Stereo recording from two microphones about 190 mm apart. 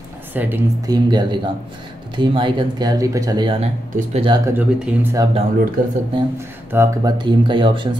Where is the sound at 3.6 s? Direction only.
35° right (ahead or behind).